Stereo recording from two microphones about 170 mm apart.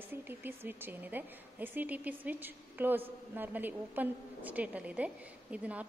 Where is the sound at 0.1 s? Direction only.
10° right (ahead or behind).